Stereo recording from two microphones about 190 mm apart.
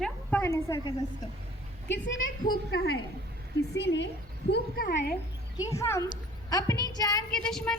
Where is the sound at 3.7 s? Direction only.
65° left (ahead or behind).